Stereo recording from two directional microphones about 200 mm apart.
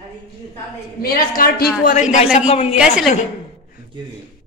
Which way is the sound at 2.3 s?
30° left (ahead or behind).